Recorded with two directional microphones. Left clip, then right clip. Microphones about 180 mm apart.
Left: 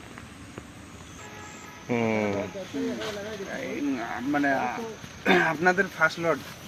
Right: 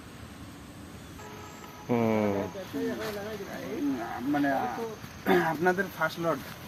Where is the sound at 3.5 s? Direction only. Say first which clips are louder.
Left 3 dB; 35° left (ahead or behind).